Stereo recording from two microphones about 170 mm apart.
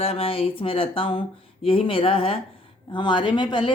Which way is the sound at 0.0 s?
35° left (ahead or behind).